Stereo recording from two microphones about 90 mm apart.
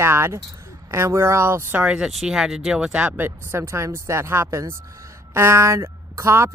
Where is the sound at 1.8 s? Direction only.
10° right (ahead or behind).